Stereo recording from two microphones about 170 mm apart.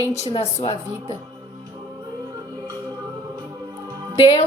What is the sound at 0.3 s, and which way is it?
Speech, 35° left (ahead or behind).